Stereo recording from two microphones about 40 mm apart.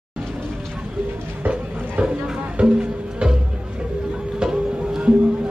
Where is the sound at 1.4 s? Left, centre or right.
Right.